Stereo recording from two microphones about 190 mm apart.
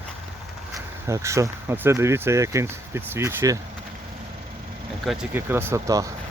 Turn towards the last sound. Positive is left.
turn(degrees=-15)  # may be behind; listen again after turning